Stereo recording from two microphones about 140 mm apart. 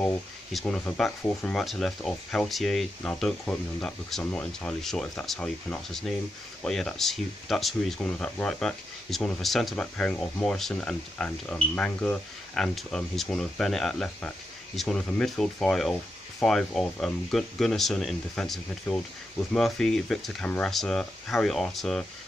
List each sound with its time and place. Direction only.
0.0 s speech: 5° left (ahead or behind)